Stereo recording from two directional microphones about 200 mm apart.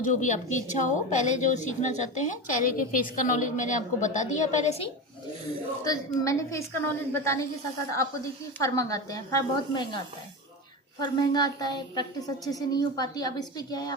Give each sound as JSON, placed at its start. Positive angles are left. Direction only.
{"t": 0.0, "sound": "a woman's voice", "side_deg": 40}
{"t": 5.8, "sound": "a woman's voice", "side_deg": 15}
{"t": 8.5, "sound": "a woman's voice", "side_deg": 15}
{"t": 11.0, "sound": "a woman's voice", "side_deg": 20}